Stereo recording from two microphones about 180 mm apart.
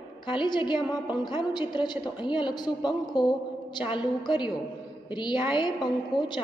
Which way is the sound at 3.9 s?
25° left (ahead or behind).